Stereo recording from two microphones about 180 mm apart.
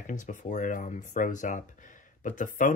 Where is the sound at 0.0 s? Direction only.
45° left (ahead or behind).